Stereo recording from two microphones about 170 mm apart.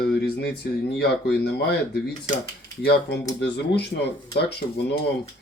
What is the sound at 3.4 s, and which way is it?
Speech, 90° left.